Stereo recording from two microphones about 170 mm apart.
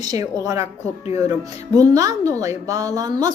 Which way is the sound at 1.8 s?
20° right (ahead or behind).